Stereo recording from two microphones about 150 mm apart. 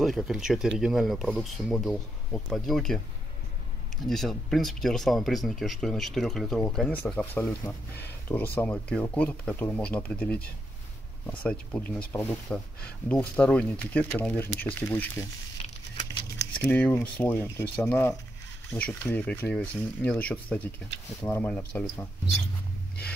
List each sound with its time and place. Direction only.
0.0 s speech: centre (ahead or behind)
4.0 s speech: centre (ahead or behind)
16.6 s speech: 10° left (ahead or behind)